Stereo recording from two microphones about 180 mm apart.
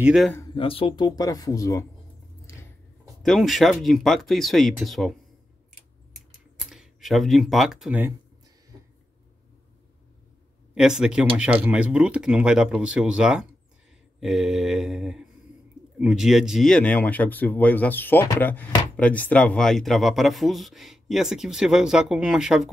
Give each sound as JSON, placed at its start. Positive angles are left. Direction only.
{"t": 0.0, "sound": "speech", "side_deg": 0}
{"t": 0.6, "sound": "speech", "side_deg": 30}
{"t": 3.2, "sound": "speech", "side_deg": 0}
{"t": 6.7, "sound": "speech", "side_deg": 0}
{"t": 10.7, "sound": "speech", "side_deg": -5}